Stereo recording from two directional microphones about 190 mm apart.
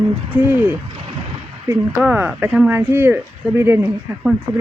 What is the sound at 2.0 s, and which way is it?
Speech, 5° right (ahead or behind).